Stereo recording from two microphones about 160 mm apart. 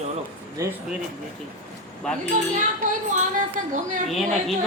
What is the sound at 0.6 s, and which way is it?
Speech, 20° right (ahead or behind).